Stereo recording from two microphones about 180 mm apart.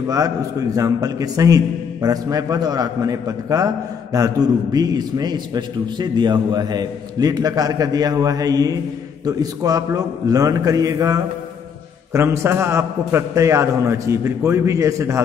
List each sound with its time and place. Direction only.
0.1 s a man's voice: 20° right (ahead or behind)